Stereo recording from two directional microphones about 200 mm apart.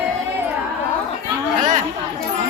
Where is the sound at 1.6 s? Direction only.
40° right (ahead or behind).